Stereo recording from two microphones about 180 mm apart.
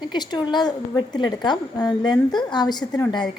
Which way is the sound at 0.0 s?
25° left (ahead or behind).